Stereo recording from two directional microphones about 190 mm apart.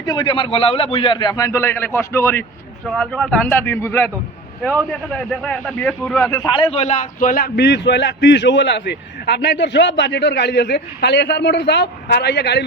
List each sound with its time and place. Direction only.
0.0 s a man's voice: 25° left (ahead or behind); by 6.4 s 5° left (ahead or behind)
6.4 s a man's voice: 25° left (ahead or behind); by 12.6 s 60° left (ahead or behind)